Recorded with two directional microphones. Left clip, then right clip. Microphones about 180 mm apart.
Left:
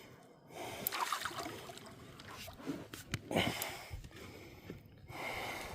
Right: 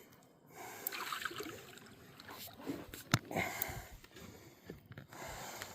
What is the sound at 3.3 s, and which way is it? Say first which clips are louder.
Wheeze: left 3 dB; 35° left (ahead or behind).